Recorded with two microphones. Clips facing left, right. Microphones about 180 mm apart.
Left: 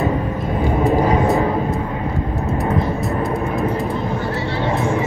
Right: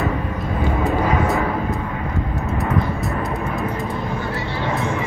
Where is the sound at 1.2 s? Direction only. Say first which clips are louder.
Left 4 dB; 20° left (ahead or behind).